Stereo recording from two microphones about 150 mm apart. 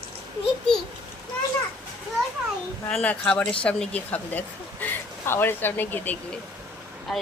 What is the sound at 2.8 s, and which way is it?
Speech, 10° left (ahead or behind).